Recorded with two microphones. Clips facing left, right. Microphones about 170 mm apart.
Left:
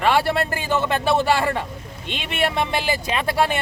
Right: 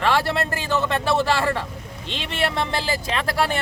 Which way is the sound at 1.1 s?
20° left (ahead or behind).